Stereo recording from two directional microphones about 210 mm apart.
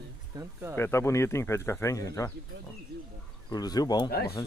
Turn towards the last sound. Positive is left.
turn(degrees=50)  # may be behind; listen again after turning